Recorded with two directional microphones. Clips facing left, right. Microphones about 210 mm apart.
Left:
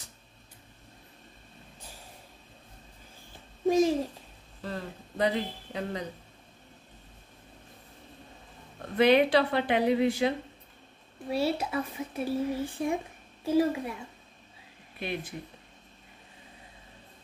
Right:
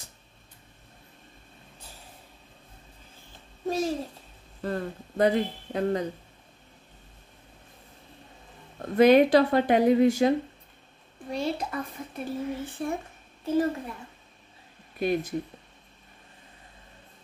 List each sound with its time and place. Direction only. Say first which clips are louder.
3.6 s babbling: left 5 dB; 15° left (ahead or behind)
4.6 s speech: right 6 dB; 50° right (ahead or behind)
8.9 s speech: right 4 dB; 45° right (ahead or behind)
11.2 s speech: left 1 dB; 5° left (ahead or behind)
15.0 s speech: right 9 dB; 40° right (ahead or behind)